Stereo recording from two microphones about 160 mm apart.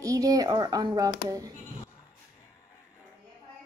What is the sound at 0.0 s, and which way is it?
Speech, 20° right (ahead or behind).